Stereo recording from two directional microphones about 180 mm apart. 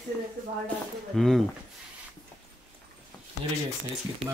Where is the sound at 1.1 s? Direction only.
Centre (ahead or behind).